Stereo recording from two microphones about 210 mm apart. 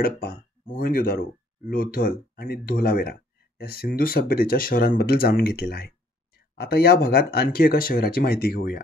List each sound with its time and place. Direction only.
0.0 s speech: 45° left (ahead or behind)